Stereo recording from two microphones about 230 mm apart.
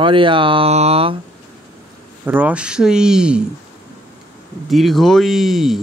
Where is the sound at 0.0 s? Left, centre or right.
Right.